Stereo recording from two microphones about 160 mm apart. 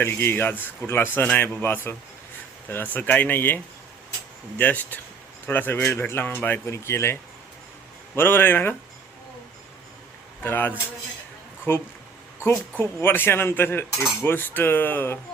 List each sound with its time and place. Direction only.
0.0 s speech: 15° left (ahead or behind)
10.4 s speech: 10° left (ahead or behind)